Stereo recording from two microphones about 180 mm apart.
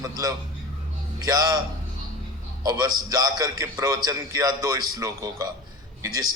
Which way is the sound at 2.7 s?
20° right (ahead or behind).